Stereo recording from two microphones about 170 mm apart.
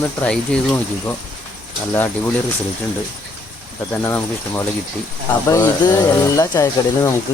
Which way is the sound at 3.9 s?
15° left (ahead or behind).